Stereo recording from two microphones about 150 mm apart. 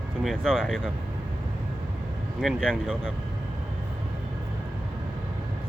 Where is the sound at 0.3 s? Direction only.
Centre (ahead or behind).